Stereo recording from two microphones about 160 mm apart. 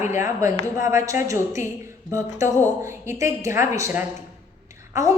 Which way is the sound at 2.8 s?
15° right (ahead or behind).